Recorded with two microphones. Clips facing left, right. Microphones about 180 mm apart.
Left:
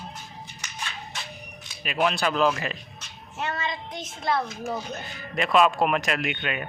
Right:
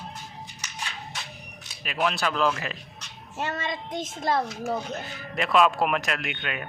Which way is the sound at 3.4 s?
45° right (ahead or behind).